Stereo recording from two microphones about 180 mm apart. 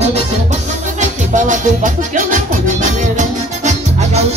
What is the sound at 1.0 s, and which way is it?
Music, 45° right (ahead or behind).